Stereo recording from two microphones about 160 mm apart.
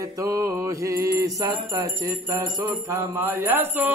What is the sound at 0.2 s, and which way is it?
Mantra, 20° right (ahead or behind).